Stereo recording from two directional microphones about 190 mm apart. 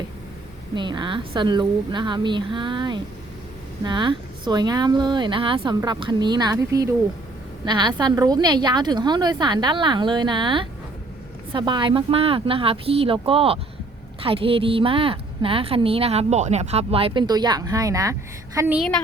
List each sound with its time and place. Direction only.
0.8 s a woman's voice: 25° right (ahead or behind)
18.8 s a woman's voice: 5° left (ahead or behind)